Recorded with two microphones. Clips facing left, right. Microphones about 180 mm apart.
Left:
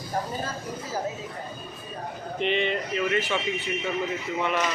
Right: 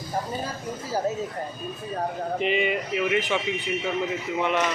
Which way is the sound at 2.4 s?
5° right (ahead or behind).